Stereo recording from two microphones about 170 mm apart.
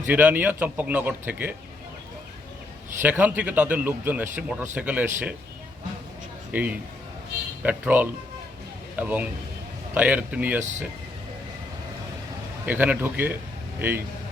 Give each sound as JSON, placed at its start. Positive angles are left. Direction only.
{"t": 0.1, "sound": "a man's voice", "side_deg": -10}
{"t": 3.0, "sound": "a man's voice", "side_deg": -10}
{"t": 6.5, "sound": "a man's voice", "side_deg": -10}
{"t": 10.6, "sound": "speech", "side_deg": -45}
{"t": 12.6, "sound": "a man's voice", "side_deg": -10}